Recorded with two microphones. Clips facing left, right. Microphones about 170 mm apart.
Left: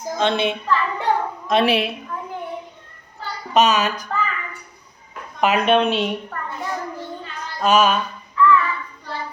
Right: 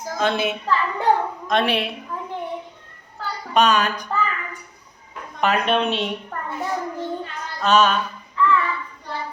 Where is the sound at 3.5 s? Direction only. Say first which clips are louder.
Left 1 dB; 5° left (ahead or behind).